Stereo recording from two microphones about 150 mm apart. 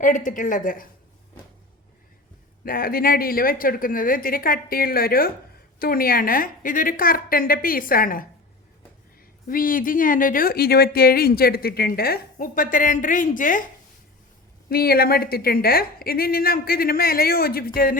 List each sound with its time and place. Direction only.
0.3 s a woman's voice: 60° left (ahead or behind)
2.6 s speech: 75° left (ahead or behind)
9.5 s speech: 70° left (ahead or behind)
14.7 s a woman's voice: 90° left